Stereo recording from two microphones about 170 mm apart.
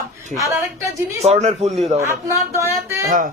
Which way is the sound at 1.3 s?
40° right (ahead or behind).